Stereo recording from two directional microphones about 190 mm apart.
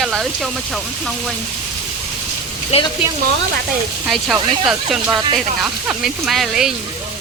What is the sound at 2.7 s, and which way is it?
Speech, 35° left (ahead or behind).